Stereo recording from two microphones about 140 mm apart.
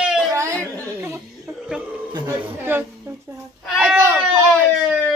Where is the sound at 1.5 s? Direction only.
5° right (ahead or behind).